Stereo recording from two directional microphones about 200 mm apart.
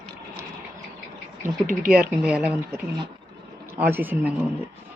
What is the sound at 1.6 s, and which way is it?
Speech, 45° right (ahead or behind).